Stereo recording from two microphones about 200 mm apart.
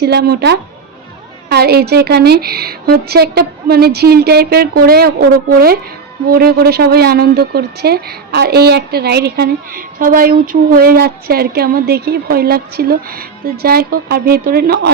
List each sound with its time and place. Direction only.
0.0 s speech: 55° right (ahead or behind)